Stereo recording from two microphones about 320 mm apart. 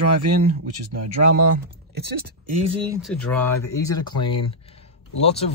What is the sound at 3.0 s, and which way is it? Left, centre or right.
A man's voice, centre.